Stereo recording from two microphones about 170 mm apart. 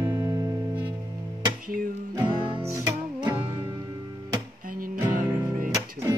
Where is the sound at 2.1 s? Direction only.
25° right (ahead or behind).